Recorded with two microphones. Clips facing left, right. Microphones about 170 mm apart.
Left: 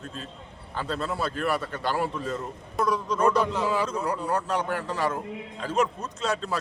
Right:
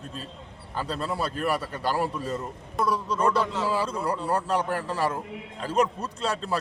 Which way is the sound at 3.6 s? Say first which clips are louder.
Even; 10° right (ahead or behind).